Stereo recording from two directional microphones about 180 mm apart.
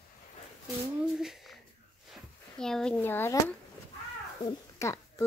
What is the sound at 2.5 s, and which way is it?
A child's voice, 5° left (ahead or behind).